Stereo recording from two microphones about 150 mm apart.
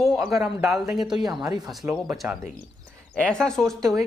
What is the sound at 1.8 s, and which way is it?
Speech, 5° right (ahead or behind).